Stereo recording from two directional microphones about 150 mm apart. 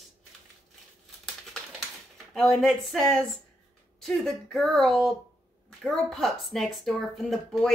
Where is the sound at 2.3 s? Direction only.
Centre (ahead or behind).